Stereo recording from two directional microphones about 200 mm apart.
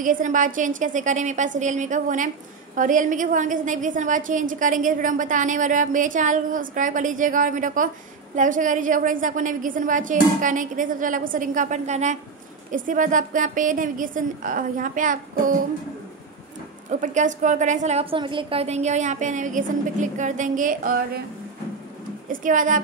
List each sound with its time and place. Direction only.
0.0 s a woman's voice: 40° right (ahead or behind)
16.9 s a woman's voice: 40° right (ahead or behind)
22.3 s a woman's voice: 40° right (ahead or behind)